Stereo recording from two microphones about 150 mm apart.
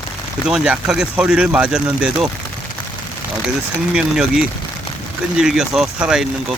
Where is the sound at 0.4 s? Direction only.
5° right (ahead or behind).